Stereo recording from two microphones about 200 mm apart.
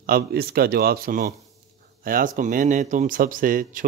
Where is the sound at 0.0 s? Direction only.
50° right (ahead or behind).